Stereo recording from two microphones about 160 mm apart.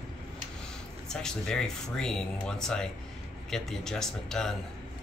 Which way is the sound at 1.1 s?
5° left (ahead or behind).